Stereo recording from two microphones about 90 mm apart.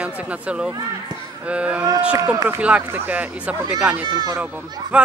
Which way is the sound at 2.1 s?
40° right (ahead or behind).